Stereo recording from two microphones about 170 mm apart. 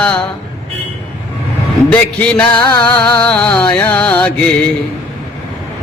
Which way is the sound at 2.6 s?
25° left (ahead or behind).